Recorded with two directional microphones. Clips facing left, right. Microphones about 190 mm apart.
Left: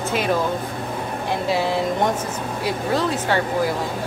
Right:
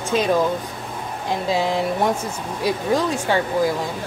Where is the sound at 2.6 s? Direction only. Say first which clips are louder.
Right 2 dB; 15° right (ahead or behind).